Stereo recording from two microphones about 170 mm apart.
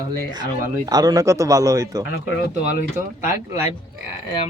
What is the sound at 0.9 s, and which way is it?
Speech, 20° right (ahead or behind).